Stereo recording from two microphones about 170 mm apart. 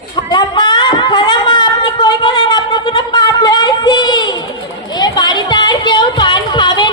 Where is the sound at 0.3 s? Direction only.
25° left (ahead or behind).